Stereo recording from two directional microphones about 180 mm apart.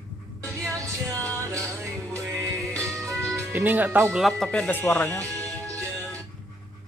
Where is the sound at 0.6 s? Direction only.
15° right (ahead or behind).